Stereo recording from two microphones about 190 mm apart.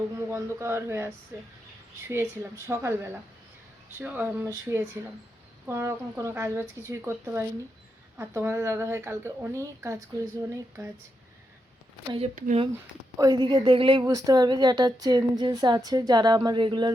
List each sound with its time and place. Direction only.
0.2 s speech: 15° right (ahead or behind)
12.1 s speech: 35° right (ahead or behind)
13.1 s a woman's voice: 20° right (ahead or behind)